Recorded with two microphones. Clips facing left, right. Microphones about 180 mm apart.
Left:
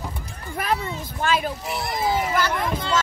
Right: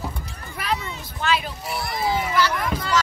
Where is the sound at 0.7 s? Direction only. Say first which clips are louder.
Left 4 dB; 45° left (ahead or behind).